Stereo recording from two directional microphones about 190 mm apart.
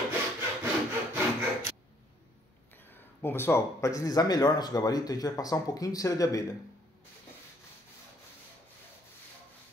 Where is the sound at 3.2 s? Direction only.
10° left (ahead or behind).